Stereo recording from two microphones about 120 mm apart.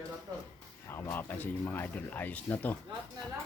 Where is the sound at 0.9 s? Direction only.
15° left (ahead or behind).